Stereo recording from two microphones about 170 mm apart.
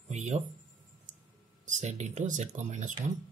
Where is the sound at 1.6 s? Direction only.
45° right (ahead or behind).